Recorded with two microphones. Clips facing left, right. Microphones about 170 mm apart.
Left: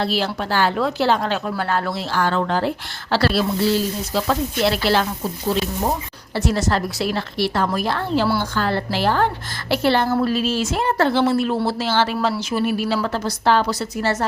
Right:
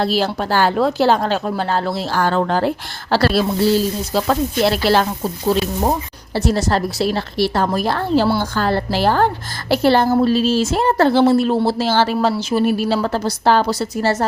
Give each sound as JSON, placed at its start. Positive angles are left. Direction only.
{"t": 0.0, "sound": "speech", "side_deg": -40}
{"t": 6.3, "sound": "speech", "side_deg": -35}